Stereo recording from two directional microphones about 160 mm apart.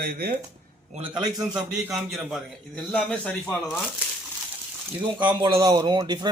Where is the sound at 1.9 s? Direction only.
Centre (ahead or behind).